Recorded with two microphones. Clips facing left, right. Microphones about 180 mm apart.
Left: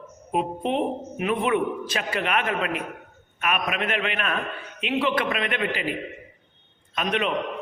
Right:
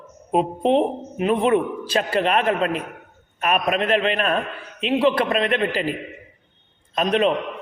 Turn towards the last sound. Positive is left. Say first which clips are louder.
# right 7 dB
turn(degrees=-35)  # may be behind; listen again after turning